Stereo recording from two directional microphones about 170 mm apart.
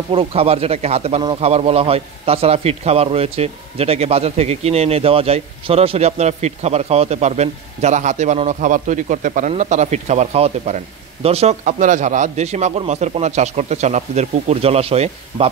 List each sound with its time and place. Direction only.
0.1 s speech: 35° right (ahead or behind)